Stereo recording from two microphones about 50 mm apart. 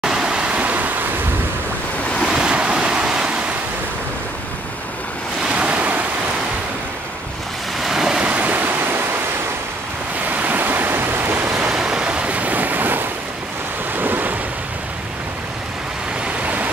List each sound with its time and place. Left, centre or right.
0.0 s waves: centre; by 0.9 s right
2.2 s waves: centre
5.5 s waves: right
7.8 s waves: centre
8.3 s stream: right
10.3 s waves: right
11.5 s waves: centre; by 14.3 s right